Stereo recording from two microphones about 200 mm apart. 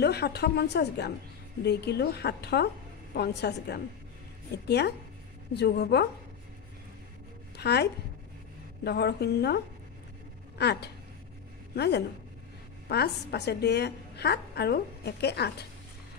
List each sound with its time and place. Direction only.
0.0 s a woman's voice: 55° left (ahead or behind)
7.5 s a woman's voice: 55° left (ahead or behind)
10.6 s a woman's voice: 55° left (ahead or behind)